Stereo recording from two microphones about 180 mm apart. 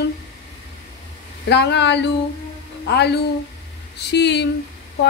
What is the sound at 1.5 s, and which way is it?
A woman's voice, 70° left (ahead or behind).